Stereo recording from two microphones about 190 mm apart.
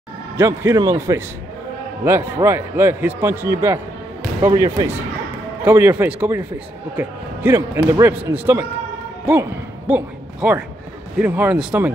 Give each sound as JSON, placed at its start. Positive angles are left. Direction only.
{"t": 0.4, "sound": "a man's voice", "side_deg": -15}
{"t": 5.7, "sound": "a man's voice", "side_deg": -10}